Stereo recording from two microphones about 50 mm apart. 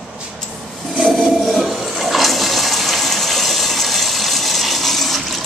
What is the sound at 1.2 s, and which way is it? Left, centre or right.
Toilet flush, centre.